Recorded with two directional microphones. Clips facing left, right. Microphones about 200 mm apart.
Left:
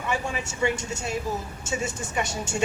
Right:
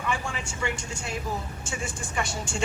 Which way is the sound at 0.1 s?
20° left (ahead or behind).